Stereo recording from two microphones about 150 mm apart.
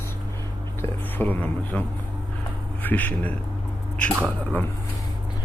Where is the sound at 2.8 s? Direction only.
10° left (ahead or behind).